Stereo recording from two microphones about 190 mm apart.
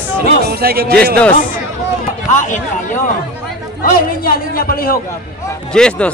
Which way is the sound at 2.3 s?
40° left (ahead or behind).